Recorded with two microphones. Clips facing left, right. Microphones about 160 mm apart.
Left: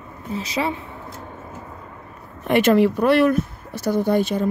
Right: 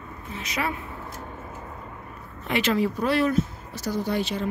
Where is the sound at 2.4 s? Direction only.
55° left (ahead or behind).